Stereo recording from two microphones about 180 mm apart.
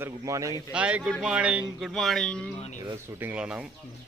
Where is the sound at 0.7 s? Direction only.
5° right (ahead or behind).